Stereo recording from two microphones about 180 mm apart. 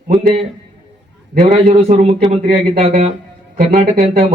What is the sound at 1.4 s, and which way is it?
Speech, 35° right (ahead or behind).